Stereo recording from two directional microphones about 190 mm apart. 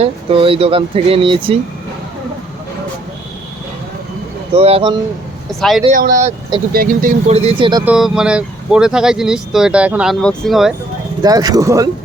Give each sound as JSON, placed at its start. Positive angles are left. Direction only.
{"t": 0.0, "sound": "speech", "side_deg": -30}
{"t": 4.5, "sound": "speech", "side_deg": -30}
{"t": 5.5, "sound": "speech", "side_deg": 0}
{"t": 5.9, "sound": "speech", "side_deg": -45}
{"t": 7.3, "sound": "speech", "side_deg": -35}
{"t": 7.9, "sound": "speech", "side_deg": -5}
{"t": 11.2, "sound": "speech", "side_deg": -20}